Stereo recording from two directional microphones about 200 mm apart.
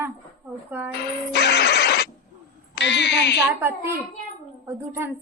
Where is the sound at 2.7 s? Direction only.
60° left (ahead or behind).